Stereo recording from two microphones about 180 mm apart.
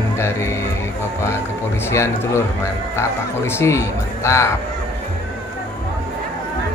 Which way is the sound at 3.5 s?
15° left (ahead or behind).